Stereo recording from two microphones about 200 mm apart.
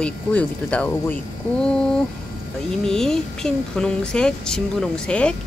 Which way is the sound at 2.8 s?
Centre (ahead or behind).